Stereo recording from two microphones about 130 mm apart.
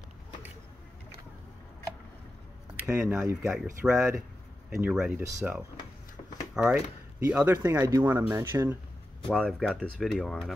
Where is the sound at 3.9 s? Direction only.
5° right (ahead or behind).